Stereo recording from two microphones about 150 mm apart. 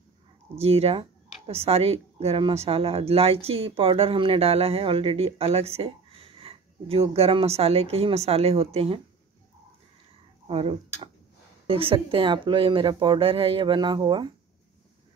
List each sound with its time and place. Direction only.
0.6 s speech: 40° right (ahead or behind)
10.5 s speech: 40° right (ahead or behind)